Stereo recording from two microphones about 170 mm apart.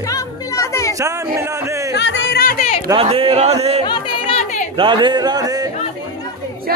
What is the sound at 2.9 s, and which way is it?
Speech, 35° right (ahead or behind).